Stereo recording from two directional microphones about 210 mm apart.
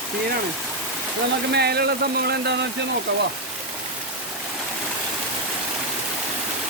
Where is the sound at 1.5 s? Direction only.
50° right (ahead or behind).